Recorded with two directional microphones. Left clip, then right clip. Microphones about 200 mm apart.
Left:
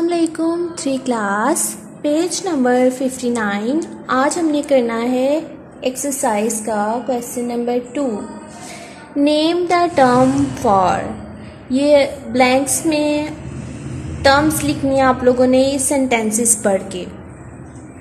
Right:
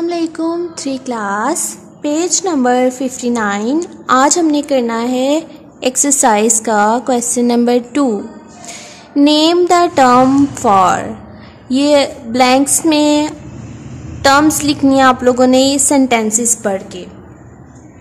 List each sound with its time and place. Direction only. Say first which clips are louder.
0.0 s speech: even; 10° right (ahead or behind); by 8.1 s 35° right (ahead or behind)
9.1 s speech: right 5 dB; 20° right (ahead or behind)
16.6 s a woman's voice: left 1 dB; 5° right (ahead or behind)